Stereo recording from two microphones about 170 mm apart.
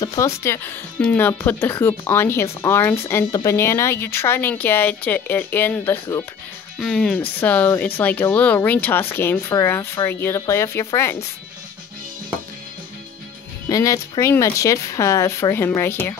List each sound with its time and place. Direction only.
0.0 s speech: 20° left (ahead or behind)
6.8 s speech: 5° left (ahead or behind)
13.7 s speech: 20° left (ahead or behind)